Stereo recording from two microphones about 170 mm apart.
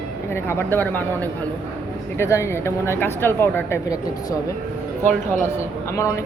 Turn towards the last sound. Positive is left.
turn(degrees=20)  # may be behind; listen again after turning